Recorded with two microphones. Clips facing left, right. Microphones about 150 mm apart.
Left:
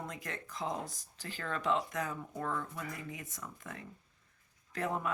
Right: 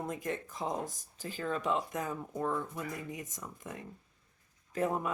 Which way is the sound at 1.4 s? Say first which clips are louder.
Right 1 dB; 10° right (ahead or behind).